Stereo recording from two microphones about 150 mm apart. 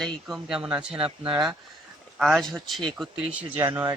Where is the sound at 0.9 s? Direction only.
35° right (ahead or behind).